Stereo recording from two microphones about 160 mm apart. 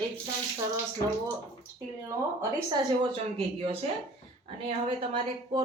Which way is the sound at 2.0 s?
25° right (ahead or behind).